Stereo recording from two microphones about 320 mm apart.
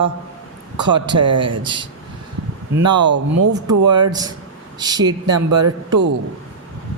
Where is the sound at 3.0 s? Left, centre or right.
Right.